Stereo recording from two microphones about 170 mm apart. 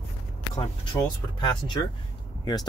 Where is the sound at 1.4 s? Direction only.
25° left (ahead or behind).